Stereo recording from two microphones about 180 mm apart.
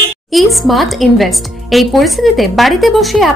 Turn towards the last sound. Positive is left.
turn(degrees=0)  # may be behind; listen again after turning